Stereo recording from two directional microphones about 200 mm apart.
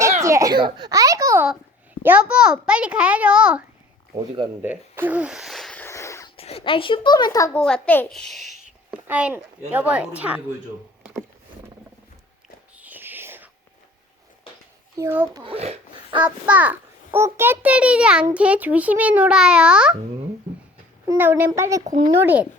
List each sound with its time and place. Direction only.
0.2 s a sound: 15° right (ahead or behind)
2.0 s a child's voice: 5° right (ahead or behind)
4.6 s wheeze: 10° right (ahead or behind); by 6.3 s 15° left (ahead or behind)
6.3 s a child's voice: 30° left (ahead or behind); by 10.4 s 5° right (ahead or behind)
12.7 s a sound: 10° right (ahead or behind)
14.9 s a child's voice: 10° right (ahead or behind)
15.5 s a sound: 30° right (ahead or behind)
16.2 s a child's voice: 5° right (ahead or behind)
21.1 s a child's voice: 10° right (ahead or behind)
21.8 s speech: 35° right (ahead or behind)
22.1 s a child's voice: 10° right (ahead or behind)